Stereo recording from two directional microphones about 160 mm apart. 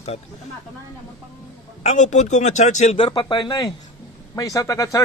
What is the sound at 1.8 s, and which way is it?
A man's voice, 45° left (ahead or behind).